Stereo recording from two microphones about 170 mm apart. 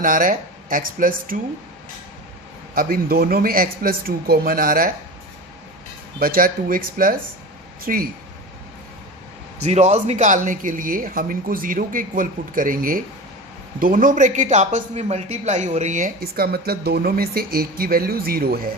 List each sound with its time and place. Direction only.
0.0 s speech: 55° right (ahead or behind)
2.7 s speech: 60° right (ahead or behind)
6.1 s speech: 55° right (ahead or behind)
9.6 s speech: 40° right (ahead or behind); by 18.7 s 60° right (ahead or behind)